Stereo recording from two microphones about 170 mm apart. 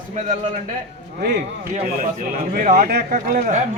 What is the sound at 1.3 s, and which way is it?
Speech, 50° right (ahead or behind).